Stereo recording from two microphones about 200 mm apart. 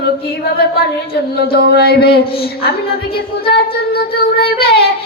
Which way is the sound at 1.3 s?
50° left (ahead or behind).